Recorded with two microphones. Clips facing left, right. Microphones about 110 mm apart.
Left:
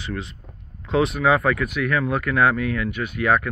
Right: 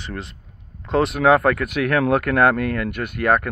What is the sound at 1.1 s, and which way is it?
Speech, 55° right (ahead or behind).